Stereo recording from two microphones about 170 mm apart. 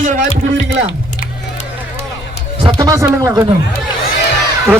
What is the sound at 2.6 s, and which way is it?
Speech, 20° right (ahead or behind).